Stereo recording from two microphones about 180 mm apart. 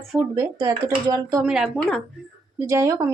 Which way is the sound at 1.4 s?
5° right (ahead or behind).